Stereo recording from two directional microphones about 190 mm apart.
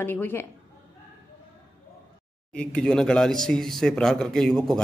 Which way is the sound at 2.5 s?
5° left (ahead or behind).